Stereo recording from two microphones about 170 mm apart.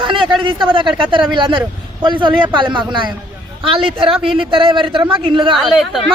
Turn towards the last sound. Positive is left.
turn(degrees=0)  # may be behind; listen again after turning